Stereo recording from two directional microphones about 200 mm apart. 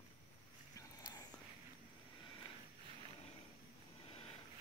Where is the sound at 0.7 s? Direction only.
20° left (ahead or behind).